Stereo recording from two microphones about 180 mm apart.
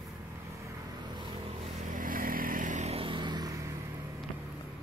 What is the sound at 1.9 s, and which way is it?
Vehicle, 50° right (ahead or behind).